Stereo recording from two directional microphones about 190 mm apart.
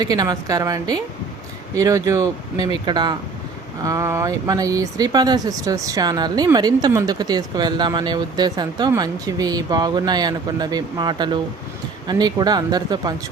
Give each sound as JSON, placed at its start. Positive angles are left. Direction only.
{"t": 0.0, "sound": "speech", "side_deg": -20}